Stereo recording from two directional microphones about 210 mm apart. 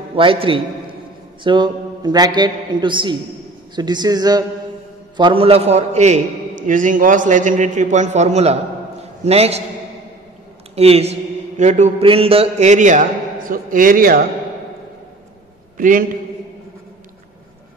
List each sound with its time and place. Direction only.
0.1 s a man's voice: 25° right (ahead or behind)
10.8 s a man's voice: 30° right (ahead or behind)
15.8 s a man's voice: 40° right (ahead or behind)